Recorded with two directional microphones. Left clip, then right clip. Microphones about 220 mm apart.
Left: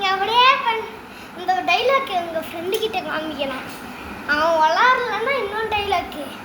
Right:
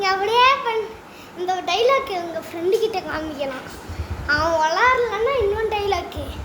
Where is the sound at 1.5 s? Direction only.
30° right (ahead or behind).